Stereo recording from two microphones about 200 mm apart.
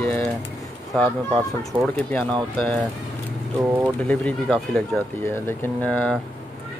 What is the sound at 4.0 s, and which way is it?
Speech, 5° left (ahead or behind).